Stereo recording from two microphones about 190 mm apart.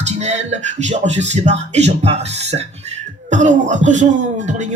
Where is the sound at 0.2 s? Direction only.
40° right (ahead or behind).